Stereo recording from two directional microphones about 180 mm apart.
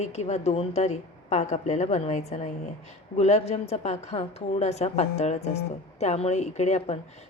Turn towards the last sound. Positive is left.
turn(degrees=40)  # may be behind; listen again after turning